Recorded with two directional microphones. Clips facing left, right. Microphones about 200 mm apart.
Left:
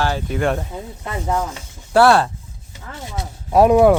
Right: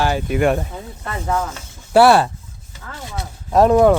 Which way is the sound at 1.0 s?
15° left (ahead or behind).